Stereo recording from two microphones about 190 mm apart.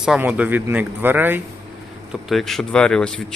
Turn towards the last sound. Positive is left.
turn(degrees=5)  # may be behind; listen again after turning